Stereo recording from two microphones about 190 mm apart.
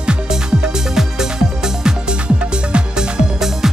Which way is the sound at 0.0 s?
5° right (ahead or behind).